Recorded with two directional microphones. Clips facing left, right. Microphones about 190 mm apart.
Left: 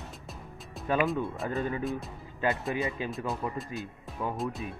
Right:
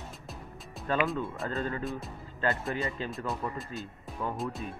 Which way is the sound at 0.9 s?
15° left (ahead or behind).